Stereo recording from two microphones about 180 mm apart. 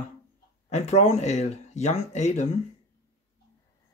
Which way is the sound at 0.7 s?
40° left (ahead or behind).